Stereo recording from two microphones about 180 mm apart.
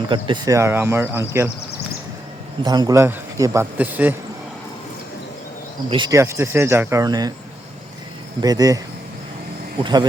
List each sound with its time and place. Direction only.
0.1 s a man's voice: 25° right (ahead or behind)
2.6 s a man's voice: 20° right (ahead or behind)
5.9 s a man's voice: 25° right (ahead or behind)
8.4 s a man's voice: 20° right (ahead or behind)